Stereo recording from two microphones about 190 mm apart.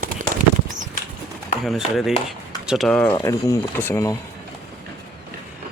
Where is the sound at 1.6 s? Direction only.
Centre (ahead or behind).